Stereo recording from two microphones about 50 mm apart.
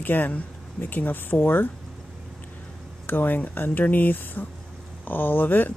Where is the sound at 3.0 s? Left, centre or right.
Left.